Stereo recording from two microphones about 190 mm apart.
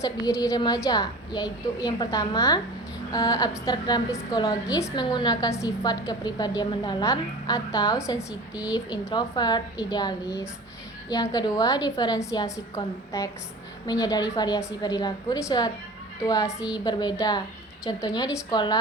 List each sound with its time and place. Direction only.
0.0 s a woman's voice: 15° left (ahead or behind)
8.3 s a woman's voice: 5° right (ahead or behind)
8.7 s a woman's voice: 20° left (ahead or behind)